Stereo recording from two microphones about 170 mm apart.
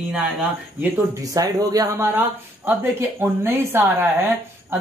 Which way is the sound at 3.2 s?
15° right (ahead or behind).